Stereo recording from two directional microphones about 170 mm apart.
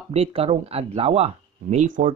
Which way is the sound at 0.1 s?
35° right (ahead or behind).